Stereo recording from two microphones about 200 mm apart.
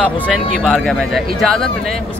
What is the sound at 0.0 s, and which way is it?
Speech, centre (ahead or behind).